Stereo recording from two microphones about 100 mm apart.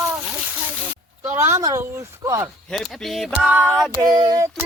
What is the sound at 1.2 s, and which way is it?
Speech, 25° right (ahead or behind).